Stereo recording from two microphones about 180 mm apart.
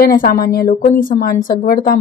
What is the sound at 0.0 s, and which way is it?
A woman's voice, 55° left (ahead or behind).